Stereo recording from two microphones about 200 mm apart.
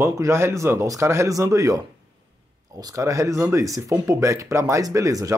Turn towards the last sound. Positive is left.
turn(degrees=-15)  # may be behind; listen again after turning